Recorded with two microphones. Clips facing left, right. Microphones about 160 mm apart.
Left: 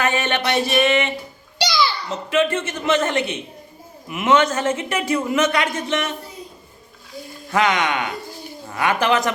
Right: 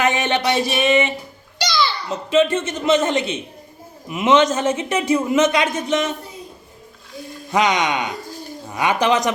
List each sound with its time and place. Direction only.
0.0 s speech: 15° right (ahead or behind)
1.5 s a sound: 10° left (ahead or behind)
2.0 s a man's voice: 20° right (ahead or behind)
7.5 s speech: 15° right (ahead or behind)